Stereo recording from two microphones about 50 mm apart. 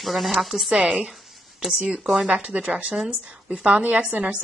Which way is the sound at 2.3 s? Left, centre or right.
Right.